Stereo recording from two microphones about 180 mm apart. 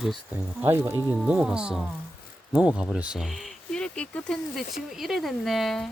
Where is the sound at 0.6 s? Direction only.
10° right (ahead or behind).